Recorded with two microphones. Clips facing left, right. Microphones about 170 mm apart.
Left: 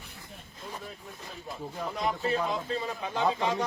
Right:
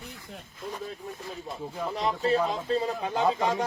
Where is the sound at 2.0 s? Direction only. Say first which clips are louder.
Right 4 dB; 35° right (ahead or behind).